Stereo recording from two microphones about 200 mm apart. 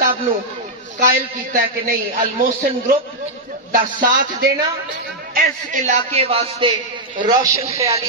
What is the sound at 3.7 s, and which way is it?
A woman's voice, 45° right (ahead or behind).